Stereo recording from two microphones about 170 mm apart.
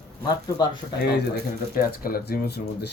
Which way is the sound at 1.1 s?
65° left (ahead or behind).